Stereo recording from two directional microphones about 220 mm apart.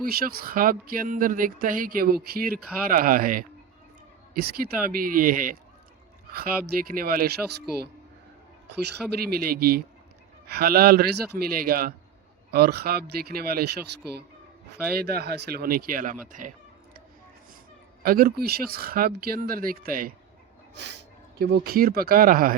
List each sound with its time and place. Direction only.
0.0 s speech: 45° right (ahead or behind)
8.6 s speech: 50° right (ahead or behind)
18.0 s speech: 40° right (ahead or behind)
20.7 s speech: 50° right (ahead or behind)